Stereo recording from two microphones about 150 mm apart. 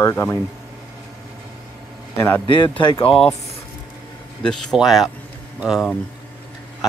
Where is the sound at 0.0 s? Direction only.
15° left (ahead or behind).